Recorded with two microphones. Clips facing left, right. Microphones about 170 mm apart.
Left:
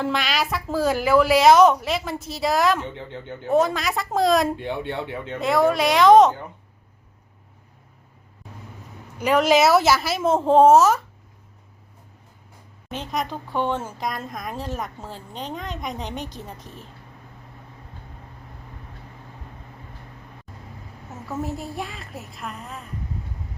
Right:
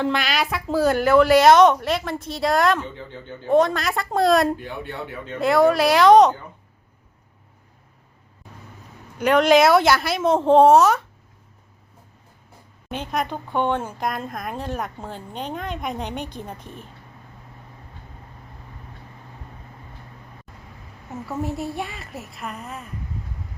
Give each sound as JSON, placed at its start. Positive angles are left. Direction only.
{"t": 0.0, "sound": "speech", "side_deg": 0}
{"t": 2.9, "sound": "speech", "side_deg": 20}
{"t": 3.4, "sound": "speech", "side_deg": 5}
{"t": 4.5, "sound": "speech", "side_deg": 25}
{"t": 5.4, "sound": "speech", "side_deg": 0}
{"t": 9.1, "sound": "speech", "side_deg": 5}
{"t": 12.9, "sound": "speech", "side_deg": 0}
{"t": 21.2, "sound": "speech", "side_deg": 0}